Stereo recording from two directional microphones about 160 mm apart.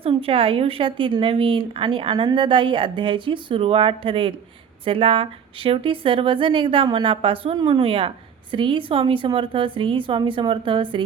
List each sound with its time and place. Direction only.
0.0 s a woman's voice: 35° right (ahead or behind)